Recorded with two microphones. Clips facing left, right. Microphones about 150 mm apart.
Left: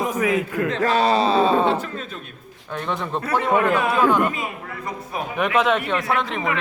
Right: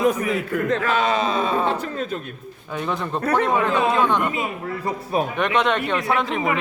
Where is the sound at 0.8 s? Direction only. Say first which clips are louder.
Left 2 dB; 35° left (ahead or behind).